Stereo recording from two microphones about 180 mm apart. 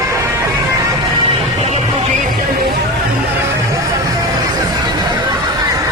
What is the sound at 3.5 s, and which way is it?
Music, 20° right (ahead or behind).